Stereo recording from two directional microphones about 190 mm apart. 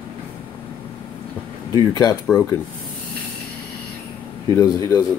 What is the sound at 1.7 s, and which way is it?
Speech, 20° left (ahead or behind).